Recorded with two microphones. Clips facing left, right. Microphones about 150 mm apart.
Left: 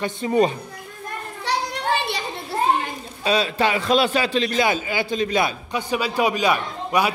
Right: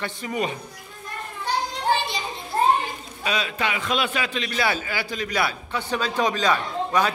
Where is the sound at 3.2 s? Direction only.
30° left (ahead or behind).